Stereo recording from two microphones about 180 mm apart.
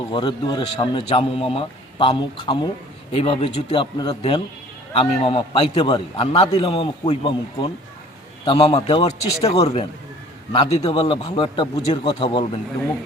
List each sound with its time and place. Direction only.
0.1 s a man's voice: 25° left (ahead or behind)
9.5 s a man's voice: 35° left (ahead or behind)